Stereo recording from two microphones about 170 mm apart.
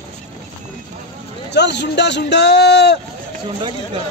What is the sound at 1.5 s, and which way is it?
Speech, 85° left.